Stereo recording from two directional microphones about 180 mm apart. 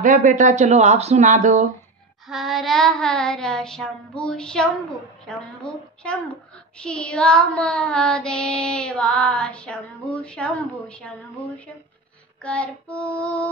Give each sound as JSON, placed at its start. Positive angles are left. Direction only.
{"t": 0.0, "sound": "speech", "side_deg": -45}
{"t": 2.2, "sound": "child singing", "side_deg": 0}
{"t": 5.2, "sound": "a woman's voice", "side_deg": 5}
{"t": 6.8, "sound": "child singing", "side_deg": 5}